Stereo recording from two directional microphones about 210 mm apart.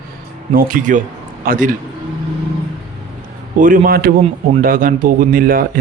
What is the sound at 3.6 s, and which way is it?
Speech, 40° right (ahead or behind).